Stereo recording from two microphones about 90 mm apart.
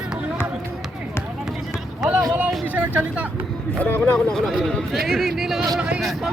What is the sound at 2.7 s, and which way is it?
Vehicle, 15° right (ahead or behind).